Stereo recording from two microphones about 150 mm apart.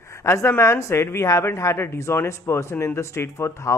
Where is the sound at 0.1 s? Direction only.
20° left (ahead or behind).